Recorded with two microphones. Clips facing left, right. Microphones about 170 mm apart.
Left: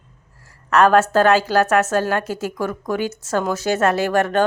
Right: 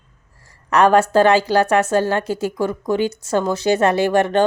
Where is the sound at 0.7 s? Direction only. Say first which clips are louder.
Right 1 dB; 15° right (ahead or behind).